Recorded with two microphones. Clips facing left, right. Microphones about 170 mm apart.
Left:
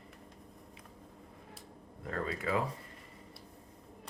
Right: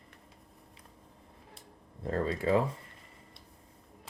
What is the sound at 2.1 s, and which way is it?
Speech, 30° right (ahead or behind).